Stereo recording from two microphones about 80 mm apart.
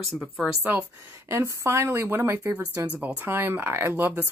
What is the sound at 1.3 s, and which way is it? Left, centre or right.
Speech, right.